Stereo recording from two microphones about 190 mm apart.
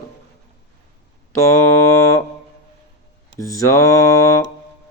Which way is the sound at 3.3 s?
15° left (ahead or behind).